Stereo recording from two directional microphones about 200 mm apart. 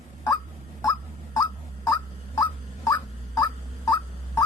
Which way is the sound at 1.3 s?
20° left (ahead or behind).